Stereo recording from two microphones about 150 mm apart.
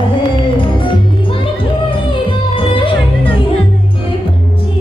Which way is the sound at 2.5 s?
35° left (ahead or behind).